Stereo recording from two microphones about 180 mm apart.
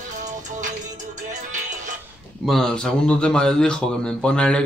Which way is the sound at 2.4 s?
Centre (ahead or behind).